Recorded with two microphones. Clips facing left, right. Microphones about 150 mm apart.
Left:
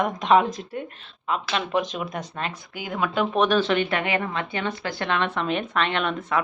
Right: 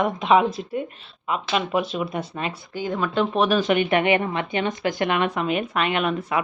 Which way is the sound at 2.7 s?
5° left (ahead or behind).